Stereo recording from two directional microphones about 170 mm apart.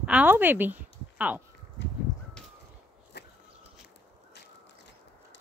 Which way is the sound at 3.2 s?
80° left.